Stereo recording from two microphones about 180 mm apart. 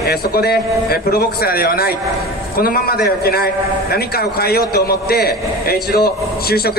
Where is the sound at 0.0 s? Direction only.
60° left (ahead or behind).